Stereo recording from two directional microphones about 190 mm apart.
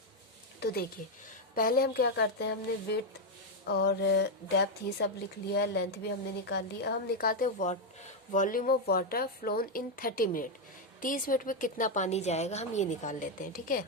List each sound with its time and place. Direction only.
0.6 s a woman's voice: 55° left (ahead or behind)